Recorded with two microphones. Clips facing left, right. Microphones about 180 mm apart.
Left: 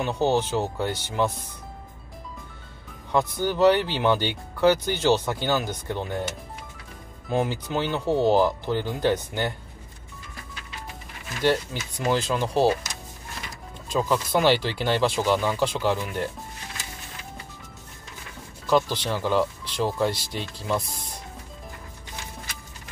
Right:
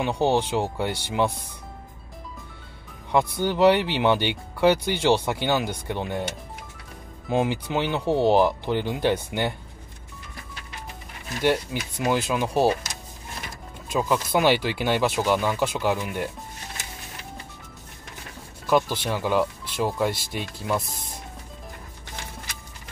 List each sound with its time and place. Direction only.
0.0 s speech: 15° right (ahead or behind)
3.1 s speech: 15° right (ahead or behind)
7.2 s speech: 15° right (ahead or behind)
11.4 s speech: 10° right (ahead or behind)
13.8 s speech: 10° right (ahead or behind)
18.7 s speech: 10° right (ahead or behind)